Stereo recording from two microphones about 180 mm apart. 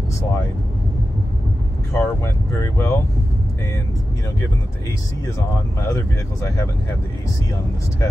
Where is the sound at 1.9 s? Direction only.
15° left (ahead or behind).